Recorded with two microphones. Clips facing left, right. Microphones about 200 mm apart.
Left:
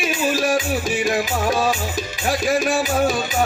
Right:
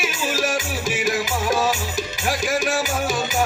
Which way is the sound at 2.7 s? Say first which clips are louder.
Left 3 dB; 45° right (ahead or behind).